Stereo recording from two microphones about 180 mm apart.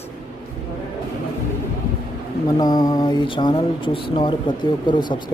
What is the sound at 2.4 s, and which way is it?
Speech, 20° left (ahead or behind).